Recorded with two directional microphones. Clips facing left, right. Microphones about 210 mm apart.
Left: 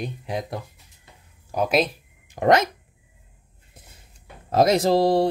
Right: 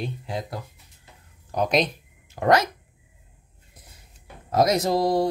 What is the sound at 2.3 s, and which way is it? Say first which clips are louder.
Speech: left 2 dB; 20° left (ahead or behind).